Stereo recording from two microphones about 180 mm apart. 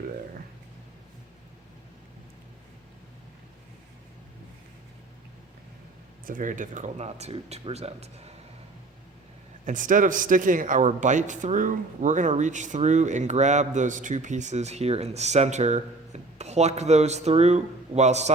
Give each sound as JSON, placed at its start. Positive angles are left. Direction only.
{"t": 6.2, "sound": "a man's voice", "side_deg": -45}
{"t": 9.6, "sound": "a man's voice", "side_deg": -45}